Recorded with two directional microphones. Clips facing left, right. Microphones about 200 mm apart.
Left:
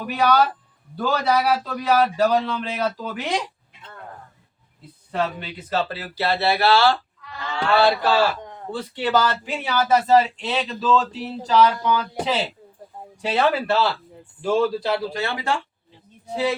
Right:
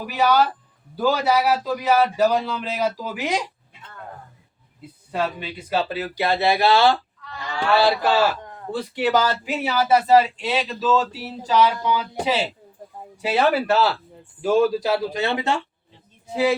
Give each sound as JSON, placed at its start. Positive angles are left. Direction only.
{"t": 0.0, "sound": "speech", "side_deg": -5}
{"t": 5.1, "sound": "speech", "side_deg": -10}
{"t": 15.1, "sound": "speech", "side_deg": -20}
{"t": 16.3, "sound": "speech", "side_deg": -10}